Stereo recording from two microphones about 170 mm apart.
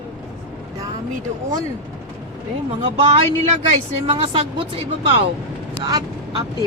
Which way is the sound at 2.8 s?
35° right (ahead or behind).